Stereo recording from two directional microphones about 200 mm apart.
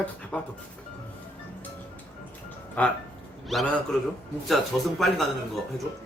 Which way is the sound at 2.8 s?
5° left (ahead or behind).